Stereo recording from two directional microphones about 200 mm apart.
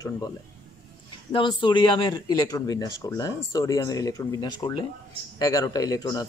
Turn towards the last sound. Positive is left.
turn(degrees=20)  # may be behind; listen again after turning